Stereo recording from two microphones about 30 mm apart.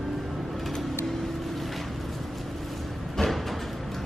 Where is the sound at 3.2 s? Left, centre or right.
Centre.